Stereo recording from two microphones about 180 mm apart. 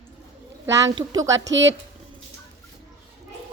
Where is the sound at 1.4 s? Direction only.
90° right.